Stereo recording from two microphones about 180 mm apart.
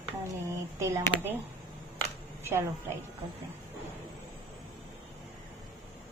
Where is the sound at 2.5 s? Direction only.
15° right (ahead or behind).